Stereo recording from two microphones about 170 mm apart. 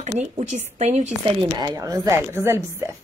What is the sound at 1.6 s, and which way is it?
A woman's voice, 20° right (ahead or behind).